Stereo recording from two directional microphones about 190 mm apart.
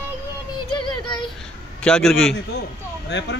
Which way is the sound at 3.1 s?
65° left (ahead or behind).